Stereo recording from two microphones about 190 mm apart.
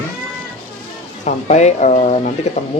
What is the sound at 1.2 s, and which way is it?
Speech, 40° left (ahead or behind).